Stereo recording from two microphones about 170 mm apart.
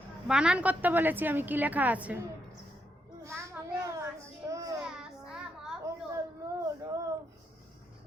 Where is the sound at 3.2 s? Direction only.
15° right (ahead or behind).